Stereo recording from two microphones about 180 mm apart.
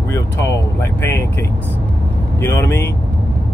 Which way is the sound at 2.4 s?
15° left (ahead or behind).